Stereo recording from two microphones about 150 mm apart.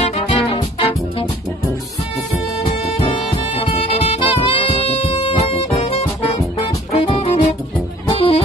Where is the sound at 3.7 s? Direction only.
40° left (ahead or behind).